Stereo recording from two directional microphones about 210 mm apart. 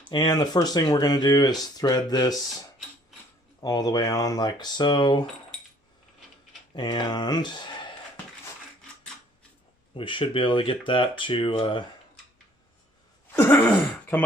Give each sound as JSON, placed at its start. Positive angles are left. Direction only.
{"t": 0.1, "sound": "speech", "side_deg": 20}
{"t": 3.6, "sound": "speech", "side_deg": 20}
{"t": 6.7, "sound": "speech", "side_deg": 20}
{"t": 10.0, "sound": "speech", "side_deg": 25}
{"t": 13.3, "sound": "throat clearing", "side_deg": 10}